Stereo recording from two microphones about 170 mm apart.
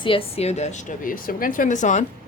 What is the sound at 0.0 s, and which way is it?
Speech, 30° left (ahead or behind).